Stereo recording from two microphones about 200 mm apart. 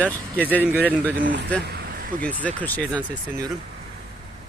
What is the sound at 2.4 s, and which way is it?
Speech, 5° left (ahead or behind).